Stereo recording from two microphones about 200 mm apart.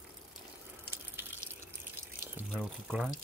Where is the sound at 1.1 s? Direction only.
10° right (ahead or behind).